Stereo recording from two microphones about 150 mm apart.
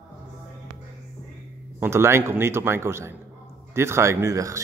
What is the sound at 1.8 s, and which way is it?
A man's voice, 15° right (ahead or behind).